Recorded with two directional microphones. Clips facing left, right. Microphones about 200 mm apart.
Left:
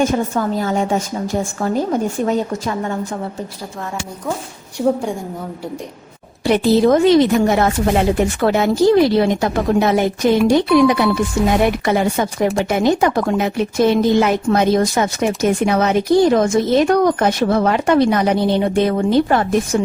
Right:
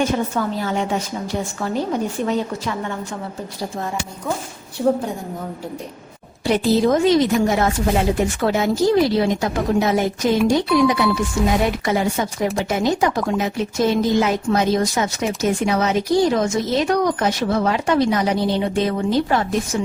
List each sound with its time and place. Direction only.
0.0 s a woman's voice: 45° left (ahead or behind)
6.4 s speech: 60° left (ahead or behind)